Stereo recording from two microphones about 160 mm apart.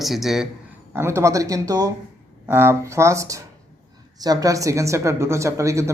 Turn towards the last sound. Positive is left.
turn(degrees=-20)  # may be behind; listen again after turning